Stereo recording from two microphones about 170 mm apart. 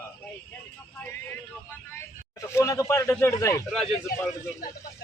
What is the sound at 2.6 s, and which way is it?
Speech, 20° left (ahead or behind).